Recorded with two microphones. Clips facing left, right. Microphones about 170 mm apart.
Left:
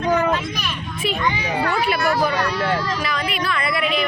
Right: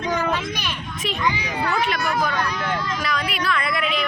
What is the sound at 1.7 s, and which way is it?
Speech, 5° left (ahead or behind).